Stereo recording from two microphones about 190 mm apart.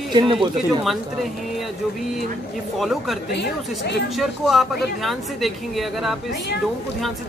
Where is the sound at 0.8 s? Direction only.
Centre (ahead or behind).